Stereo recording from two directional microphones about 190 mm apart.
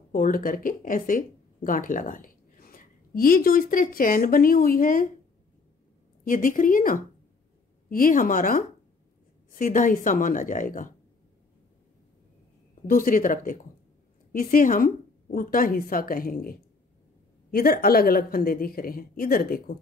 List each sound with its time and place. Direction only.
0.1 s speech: 50° left (ahead or behind)
6.2 s a woman's voice: 45° left (ahead or behind)
12.8 s a woman's voice: 45° left (ahead or behind)